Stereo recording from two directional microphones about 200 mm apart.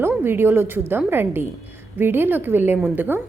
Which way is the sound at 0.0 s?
10° right (ahead or behind).